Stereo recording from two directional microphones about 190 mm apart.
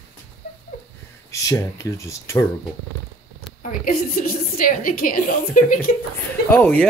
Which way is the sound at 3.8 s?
50° left (ahead or behind).